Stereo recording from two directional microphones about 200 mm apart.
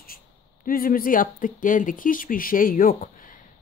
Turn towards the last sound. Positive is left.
turn(degrees=45)  # may be behind; listen again after turning